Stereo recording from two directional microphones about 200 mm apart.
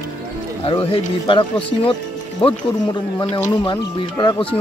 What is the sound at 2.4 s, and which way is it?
Speech, 25° left (ahead or behind).